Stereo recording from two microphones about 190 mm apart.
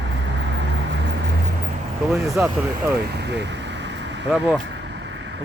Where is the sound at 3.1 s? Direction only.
60° right (ahead or behind).